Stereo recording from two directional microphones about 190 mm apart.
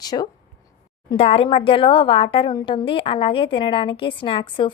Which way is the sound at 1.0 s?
30° left (ahead or behind).